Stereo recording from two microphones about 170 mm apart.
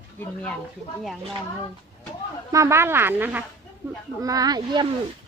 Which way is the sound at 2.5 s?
15° right (ahead or behind).